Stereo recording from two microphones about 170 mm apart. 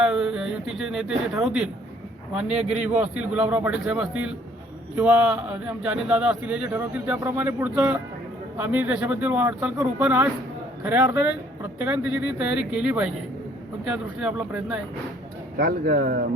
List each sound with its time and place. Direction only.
0.0 s speech: 5° right (ahead or behind)
15.5 s speech: 65° right (ahead or behind)